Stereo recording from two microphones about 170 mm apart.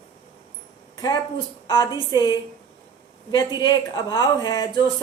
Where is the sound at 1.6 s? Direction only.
25° left (ahead or behind).